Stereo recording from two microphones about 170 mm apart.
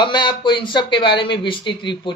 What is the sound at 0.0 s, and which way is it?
Speech, 25° left (ahead or behind).